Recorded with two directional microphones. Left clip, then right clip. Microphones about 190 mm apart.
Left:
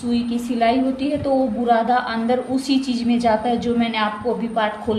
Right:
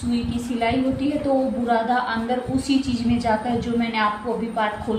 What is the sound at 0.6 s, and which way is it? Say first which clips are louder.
A woman's voice: left 4 dB; 50° left (ahead or behind).